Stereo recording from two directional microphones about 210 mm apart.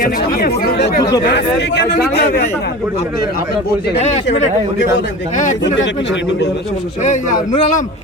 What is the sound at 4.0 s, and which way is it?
Speech, 30° left (ahead or behind).